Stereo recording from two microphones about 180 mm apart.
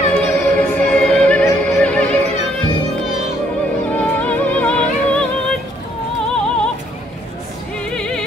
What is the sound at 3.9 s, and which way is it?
Music, 10° left (ahead or behind).